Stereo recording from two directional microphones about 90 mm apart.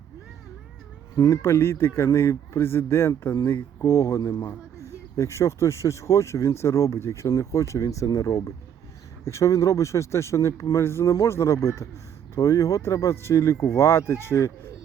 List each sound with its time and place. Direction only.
1.1 s speech: 40° left (ahead or behind)
1.4 s speech: 30° left (ahead or behind)